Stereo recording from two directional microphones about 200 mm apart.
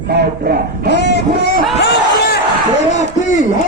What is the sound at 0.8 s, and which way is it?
Speech, 55° left (ahead or behind).